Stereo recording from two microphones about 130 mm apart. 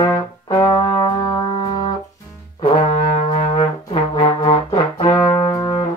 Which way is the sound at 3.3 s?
55° left (ahead or behind).